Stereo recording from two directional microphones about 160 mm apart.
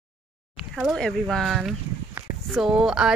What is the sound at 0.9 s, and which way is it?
Speech, 5° left (ahead or behind).